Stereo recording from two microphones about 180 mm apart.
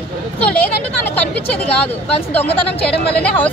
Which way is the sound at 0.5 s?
10° left (ahead or behind).